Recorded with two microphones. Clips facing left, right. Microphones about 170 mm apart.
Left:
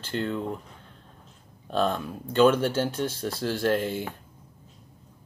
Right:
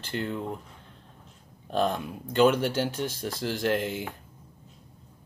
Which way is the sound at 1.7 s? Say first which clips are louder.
Left 1 dB; 15° right (ahead or behind).